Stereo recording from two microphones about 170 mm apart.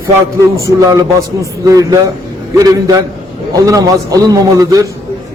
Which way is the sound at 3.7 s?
20° right (ahead or behind).